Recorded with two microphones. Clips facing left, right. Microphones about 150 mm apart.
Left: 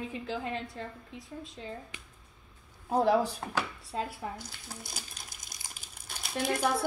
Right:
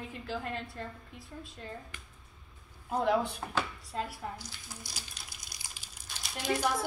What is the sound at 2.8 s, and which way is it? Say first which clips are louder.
Speech: left 3 dB; 35° left (ahead or behind).